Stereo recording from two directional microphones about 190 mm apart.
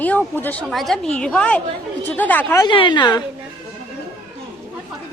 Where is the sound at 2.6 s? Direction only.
25° left (ahead or behind).